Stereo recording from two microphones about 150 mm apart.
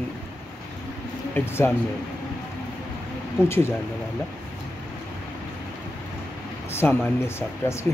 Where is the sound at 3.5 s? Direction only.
15° left (ahead or behind).